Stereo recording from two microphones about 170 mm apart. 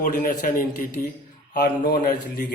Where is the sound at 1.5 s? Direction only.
65° left (ahead or behind).